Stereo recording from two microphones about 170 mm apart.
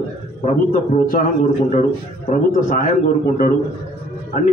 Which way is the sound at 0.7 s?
50° left (ahead or behind).